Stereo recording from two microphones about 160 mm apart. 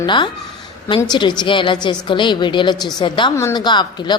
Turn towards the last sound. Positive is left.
turn(degrees=25)  # may be behind; listen again after turning